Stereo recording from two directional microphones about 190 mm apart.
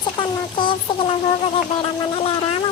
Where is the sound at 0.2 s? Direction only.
25° left (ahead or behind).